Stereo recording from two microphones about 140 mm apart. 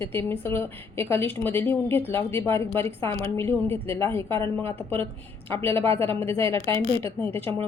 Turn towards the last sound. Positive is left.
turn(degrees=15)  # may be behind; listen again after turning